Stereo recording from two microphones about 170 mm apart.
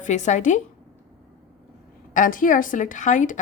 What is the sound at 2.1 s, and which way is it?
Speech, 50° left (ahead or behind).